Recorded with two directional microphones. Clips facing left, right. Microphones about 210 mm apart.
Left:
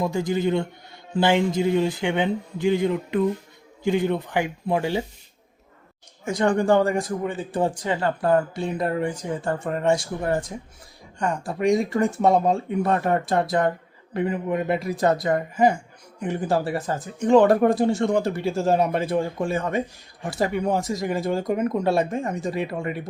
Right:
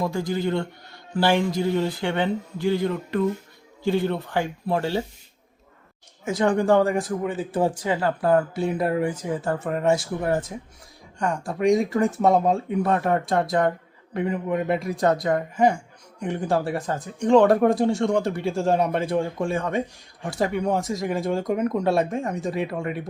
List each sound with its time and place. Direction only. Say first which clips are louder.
0.0 s a man's voice: left 2 dB; 20° left (ahead or behind)
6.2 s speech: even; centre (ahead or behind)